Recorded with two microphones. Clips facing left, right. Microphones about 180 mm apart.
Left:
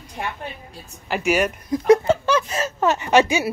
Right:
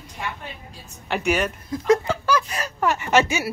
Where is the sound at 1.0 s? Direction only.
5° left (ahead or behind).